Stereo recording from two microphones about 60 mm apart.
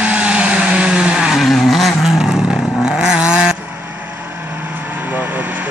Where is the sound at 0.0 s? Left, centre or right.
Centre.